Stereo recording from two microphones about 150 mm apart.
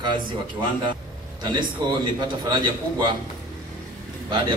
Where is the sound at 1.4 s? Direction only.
30° right (ahead or behind).